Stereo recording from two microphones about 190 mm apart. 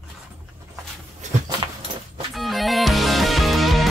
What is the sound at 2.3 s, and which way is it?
Music, centre (ahead or behind).